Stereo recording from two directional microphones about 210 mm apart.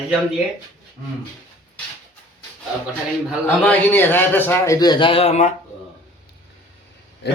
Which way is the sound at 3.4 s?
5° left (ahead or behind).